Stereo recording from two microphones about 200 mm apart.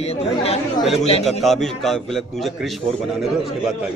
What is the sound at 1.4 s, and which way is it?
A man's voice, centre (ahead or behind).